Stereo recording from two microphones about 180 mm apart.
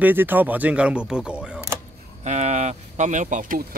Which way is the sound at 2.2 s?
40° right (ahead or behind).